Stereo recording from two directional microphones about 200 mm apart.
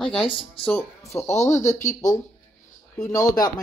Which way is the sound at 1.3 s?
35° left (ahead or behind).